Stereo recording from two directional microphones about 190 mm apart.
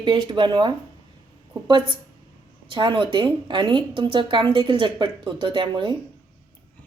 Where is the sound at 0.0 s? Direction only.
25° right (ahead or behind).